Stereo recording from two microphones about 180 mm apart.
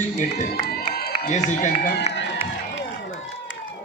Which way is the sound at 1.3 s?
40° left (ahead or behind).